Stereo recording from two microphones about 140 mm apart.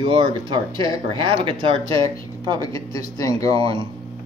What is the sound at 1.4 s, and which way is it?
Speech, 40° right (ahead or behind).